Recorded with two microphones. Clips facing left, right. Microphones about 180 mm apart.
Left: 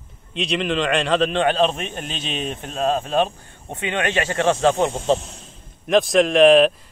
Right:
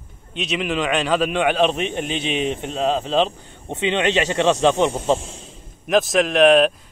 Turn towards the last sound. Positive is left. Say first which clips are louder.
# left 1 dB
turn(degrees=0)  # may be behind; listen again after turning